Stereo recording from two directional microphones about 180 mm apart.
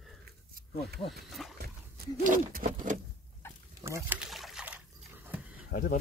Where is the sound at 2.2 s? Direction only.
50° right (ahead or behind).